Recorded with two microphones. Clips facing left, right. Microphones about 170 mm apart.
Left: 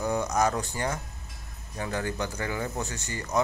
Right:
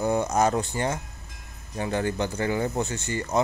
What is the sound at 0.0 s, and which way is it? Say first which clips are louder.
A man's voice: right 3 dB; 25° right (ahead or behind).